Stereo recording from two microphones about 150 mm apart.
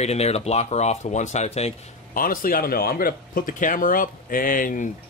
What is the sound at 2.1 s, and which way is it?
Speech, 70° left (ahead or behind).